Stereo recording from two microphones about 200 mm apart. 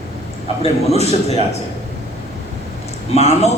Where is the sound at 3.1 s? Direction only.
35° left (ahead or behind).